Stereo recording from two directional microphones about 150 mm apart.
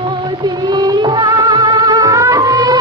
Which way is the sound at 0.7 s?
30° right (ahead or behind).